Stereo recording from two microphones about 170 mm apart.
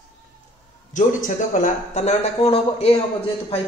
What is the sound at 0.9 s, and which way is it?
Speech, 50° left (ahead or behind).